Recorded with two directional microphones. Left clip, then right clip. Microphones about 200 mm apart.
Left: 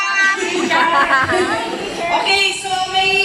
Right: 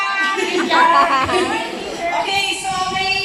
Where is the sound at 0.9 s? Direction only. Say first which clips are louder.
Even; 10° right (ahead or behind).